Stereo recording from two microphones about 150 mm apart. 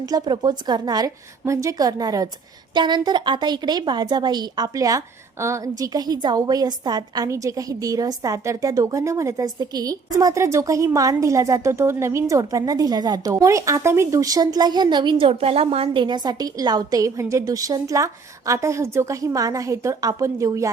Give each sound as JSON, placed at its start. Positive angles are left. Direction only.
{"t": 0.0, "sound": "a woman's voice", "side_deg": -25}